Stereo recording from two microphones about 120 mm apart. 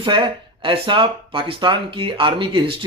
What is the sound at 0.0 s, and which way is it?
Speech, 40° right (ahead or behind).